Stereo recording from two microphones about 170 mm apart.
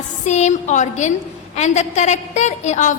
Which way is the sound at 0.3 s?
45° left (ahead or behind).